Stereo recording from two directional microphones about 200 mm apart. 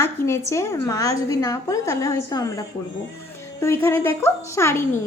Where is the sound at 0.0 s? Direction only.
10° left (ahead or behind).